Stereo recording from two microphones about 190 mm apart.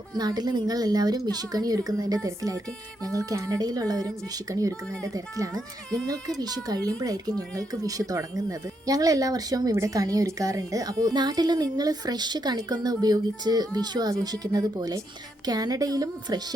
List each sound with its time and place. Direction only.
0.2 s speech: 20° right (ahead or behind)
5.5 s speech: 5° left (ahead or behind)
6.4 s speech: 20° right (ahead or behind)